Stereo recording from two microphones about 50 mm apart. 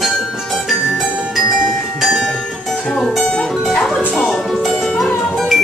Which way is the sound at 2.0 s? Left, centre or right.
Centre.